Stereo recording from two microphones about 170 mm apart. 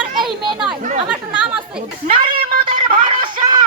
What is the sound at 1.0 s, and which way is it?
Chatter, 5° right (ahead or behind).